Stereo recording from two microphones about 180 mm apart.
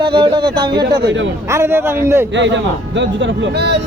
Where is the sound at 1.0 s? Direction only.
90° right.